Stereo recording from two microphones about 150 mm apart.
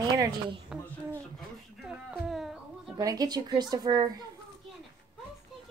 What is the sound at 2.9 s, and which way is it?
A woman's voice, 25° right (ahead or behind).